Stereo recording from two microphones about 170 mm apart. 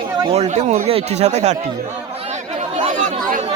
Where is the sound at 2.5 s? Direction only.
45° right (ahead or behind).